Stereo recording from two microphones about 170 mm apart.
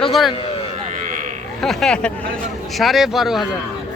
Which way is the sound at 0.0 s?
Centre (ahead or behind).